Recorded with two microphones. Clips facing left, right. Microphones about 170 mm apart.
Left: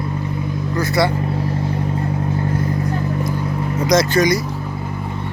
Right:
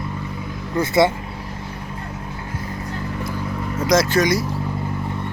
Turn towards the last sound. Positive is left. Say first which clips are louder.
# left 2 dB
turn(degrees=0)  # may be behind; listen again after turning